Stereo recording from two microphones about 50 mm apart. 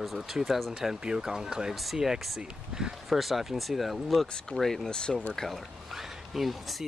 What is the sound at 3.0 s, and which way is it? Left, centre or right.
Speech, centre.